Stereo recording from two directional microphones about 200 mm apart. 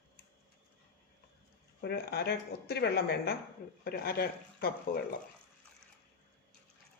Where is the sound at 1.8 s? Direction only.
55° left (ahead or behind).